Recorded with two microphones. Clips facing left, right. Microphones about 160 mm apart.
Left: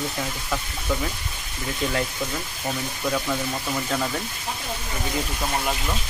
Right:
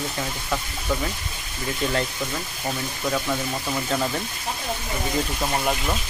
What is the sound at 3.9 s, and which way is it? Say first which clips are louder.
Speech: right 2 dB; 5° right (ahead or behind).